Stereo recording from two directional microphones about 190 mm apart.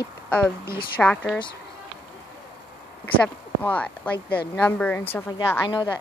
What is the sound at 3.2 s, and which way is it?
Speech, 5° left (ahead or behind).